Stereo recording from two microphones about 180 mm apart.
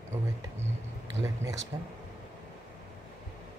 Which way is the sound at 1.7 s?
20° right (ahead or behind).